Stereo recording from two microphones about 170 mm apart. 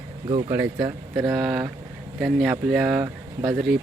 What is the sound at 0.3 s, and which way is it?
Speech, 30° right (ahead or behind).